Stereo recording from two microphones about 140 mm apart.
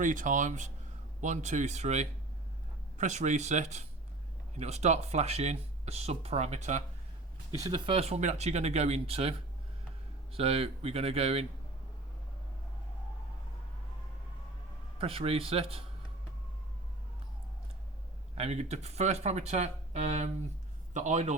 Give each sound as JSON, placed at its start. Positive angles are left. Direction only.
{"t": 0.0, "sound": "speech", "side_deg": -70}
{"t": 7.9, "sound": "speech", "side_deg": -45}
{"t": 10.3, "sound": "speech", "side_deg": -45}
{"t": 14.9, "sound": "speech", "side_deg": -40}
{"t": 18.3, "sound": "speech", "side_deg": -50}